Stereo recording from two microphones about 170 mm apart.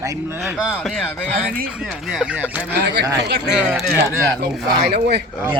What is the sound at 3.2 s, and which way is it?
Speech, 80° right.